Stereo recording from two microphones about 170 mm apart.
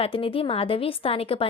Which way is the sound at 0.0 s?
30° left (ahead or behind).